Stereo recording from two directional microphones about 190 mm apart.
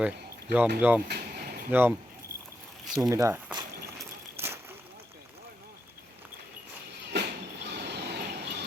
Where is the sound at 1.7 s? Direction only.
10° right (ahead or behind).